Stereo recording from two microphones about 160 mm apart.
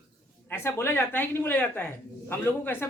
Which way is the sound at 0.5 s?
15° left (ahead or behind).